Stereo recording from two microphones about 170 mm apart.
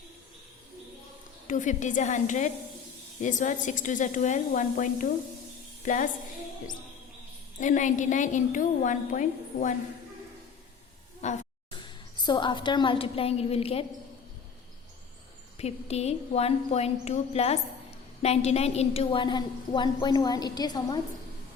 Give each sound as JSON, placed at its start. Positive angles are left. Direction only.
{"t": 1.5, "sound": "a woman's voice", "side_deg": 50}
{"t": 7.6, "sound": "a woman's voice", "side_deg": 45}
{"t": 11.2, "sound": "speech", "side_deg": 40}
{"t": 11.7, "sound": "a woman's voice", "side_deg": 25}
{"t": 15.5, "sound": "a woman's voice", "side_deg": 40}